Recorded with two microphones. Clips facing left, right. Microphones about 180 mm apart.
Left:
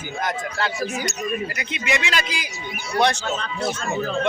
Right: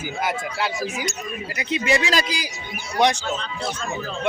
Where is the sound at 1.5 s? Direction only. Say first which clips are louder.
Right 4 dB; 35° right (ahead or behind).